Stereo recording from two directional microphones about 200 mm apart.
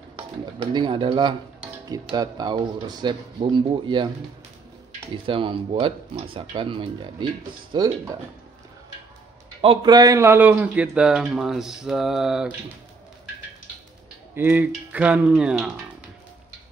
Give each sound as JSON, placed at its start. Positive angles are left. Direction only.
{"t": 0.7, "sound": "speech", "side_deg": -25}
{"t": 5.1, "sound": "speech", "side_deg": -25}
{"t": 9.6, "sound": "speech", "side_deg": -25}
{"t": 14.3, "sound": "speech", "side_deg": -10}